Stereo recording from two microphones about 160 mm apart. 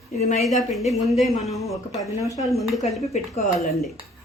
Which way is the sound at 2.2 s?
20° left (ahead or behind).